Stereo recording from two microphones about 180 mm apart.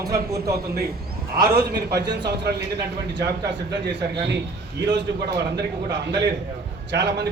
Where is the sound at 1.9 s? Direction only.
70° right (ahead or behind).